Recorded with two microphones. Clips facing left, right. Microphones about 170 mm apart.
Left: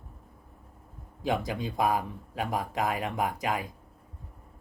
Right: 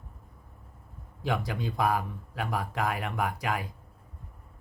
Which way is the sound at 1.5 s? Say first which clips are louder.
Left 1 dB; 20° left (ahead or behind).